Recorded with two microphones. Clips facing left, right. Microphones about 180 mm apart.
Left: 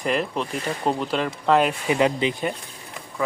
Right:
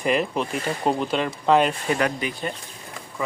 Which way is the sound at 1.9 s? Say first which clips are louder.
Left 3 dB; 20° left (ahead or behind).